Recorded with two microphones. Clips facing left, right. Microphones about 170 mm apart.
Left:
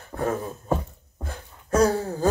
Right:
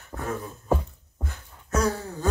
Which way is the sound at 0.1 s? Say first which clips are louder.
Left 5 dB; 35° left (ahead or behind).